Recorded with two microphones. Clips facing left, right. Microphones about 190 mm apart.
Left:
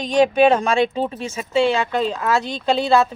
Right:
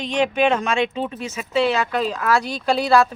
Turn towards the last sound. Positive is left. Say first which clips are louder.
# even
turn(degrees=25)  # may be behind; listen again after turning